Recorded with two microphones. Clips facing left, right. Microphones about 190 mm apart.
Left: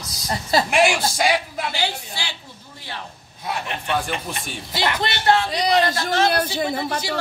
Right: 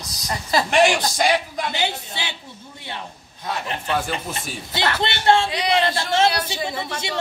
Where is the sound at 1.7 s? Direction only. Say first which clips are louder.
Right 1 dB; 20° right (ahead or behind).